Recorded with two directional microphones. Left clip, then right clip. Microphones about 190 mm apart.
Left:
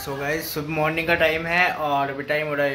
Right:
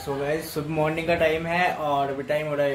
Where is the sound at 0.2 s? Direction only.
Centre (ahead or behind).